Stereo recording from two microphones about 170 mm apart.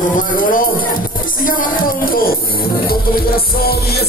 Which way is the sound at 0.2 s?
55° left (ahead or behind).